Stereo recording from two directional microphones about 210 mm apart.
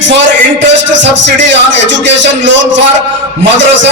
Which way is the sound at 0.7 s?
60° right (ahead or behind).